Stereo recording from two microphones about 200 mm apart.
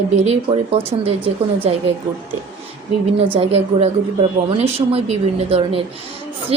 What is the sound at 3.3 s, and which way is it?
A woman's voice, 30° right (ahead or behind).